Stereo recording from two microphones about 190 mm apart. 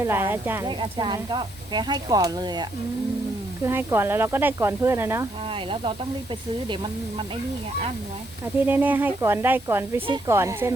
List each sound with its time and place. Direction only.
0.0 s speech: 10° right (ahead or behind)
0.7 s speech: 25° right (ahead or behind)
5.5 s speech: 25° right (ahead or behind)
8.6 s speech: 10° right (ahead or behind)